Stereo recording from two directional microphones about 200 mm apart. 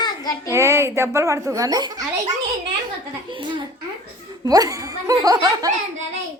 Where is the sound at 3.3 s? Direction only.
25° right (ahead or behind).